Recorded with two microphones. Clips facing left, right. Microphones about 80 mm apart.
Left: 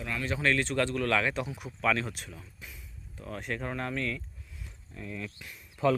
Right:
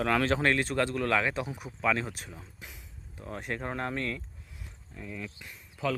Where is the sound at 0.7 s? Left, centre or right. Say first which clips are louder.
Even; centre; by 4.2 s right.